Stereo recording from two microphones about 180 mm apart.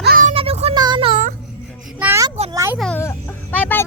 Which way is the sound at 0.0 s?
50° right (ahead or behind).